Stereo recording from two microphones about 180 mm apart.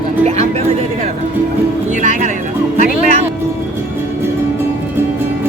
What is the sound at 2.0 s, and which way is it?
Music, 45° right (ahead or behind).